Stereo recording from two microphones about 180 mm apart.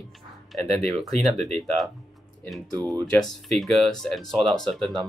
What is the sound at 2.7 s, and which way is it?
Speech, 20° right (ahead or behind).